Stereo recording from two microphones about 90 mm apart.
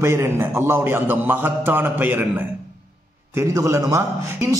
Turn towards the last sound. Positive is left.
turn(degrees=-35)  # may be behind; listen again after turning